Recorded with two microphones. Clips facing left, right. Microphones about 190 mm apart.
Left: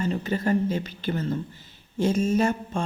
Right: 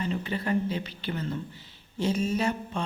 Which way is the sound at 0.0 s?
40° left (ahead or behind).